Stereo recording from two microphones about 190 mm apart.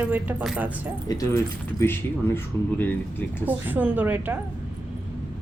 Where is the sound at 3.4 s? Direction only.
10° right (ahead or behind).